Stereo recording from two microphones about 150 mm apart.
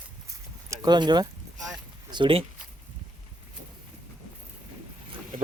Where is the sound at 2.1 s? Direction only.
35° right (ahead or behind).